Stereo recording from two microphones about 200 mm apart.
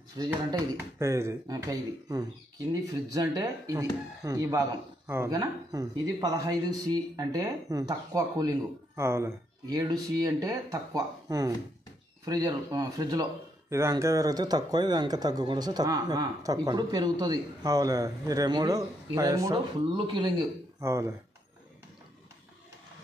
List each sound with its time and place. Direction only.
0.2 s speech: 20° right (ahead or behind)
20.8 s speech: 15° right (ahead or behind)